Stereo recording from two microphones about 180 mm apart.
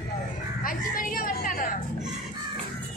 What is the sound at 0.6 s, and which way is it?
Music, 50° left (ahead or behind).